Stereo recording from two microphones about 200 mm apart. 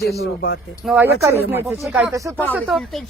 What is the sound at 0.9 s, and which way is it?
Speech, 10° right (ahead or behind).